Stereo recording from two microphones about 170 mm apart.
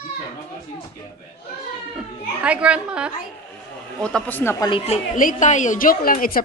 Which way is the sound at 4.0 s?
10° left (ahead or behind).